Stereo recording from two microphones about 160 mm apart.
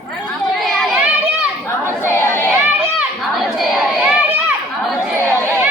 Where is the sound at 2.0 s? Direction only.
15° left (ahead or behind).